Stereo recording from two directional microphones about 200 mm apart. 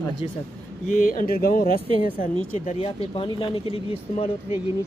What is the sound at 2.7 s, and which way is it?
Speech, 30° left (ahead or behind).